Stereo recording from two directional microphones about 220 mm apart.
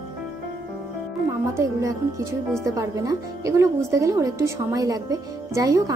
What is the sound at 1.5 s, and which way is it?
A woman's voice, 15° right (ahead or behind).